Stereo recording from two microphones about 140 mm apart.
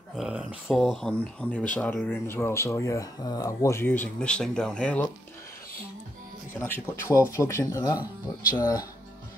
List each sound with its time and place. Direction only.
0.1 s speech: 5° right (ahead or behind)
6.6 s speech: 15° left (ahead or behind)